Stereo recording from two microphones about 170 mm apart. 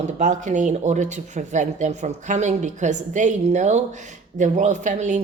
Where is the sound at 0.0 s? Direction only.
45° right (ahead or behind).